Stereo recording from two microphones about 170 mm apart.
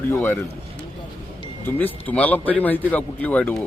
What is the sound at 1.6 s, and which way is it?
A man's voice, 10° left (ahead or behind).